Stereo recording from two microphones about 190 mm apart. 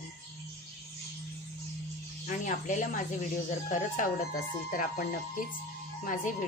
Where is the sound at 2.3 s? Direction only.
45° left (ahead or behind).